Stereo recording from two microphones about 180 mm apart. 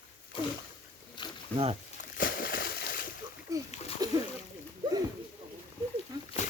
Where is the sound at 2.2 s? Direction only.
50° left (ahead or behind).